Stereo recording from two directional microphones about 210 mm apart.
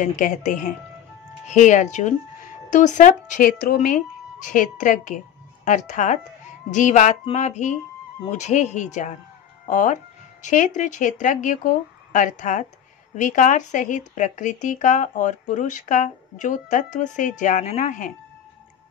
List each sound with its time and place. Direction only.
0.0 s speech: 35° left (ahead or behind)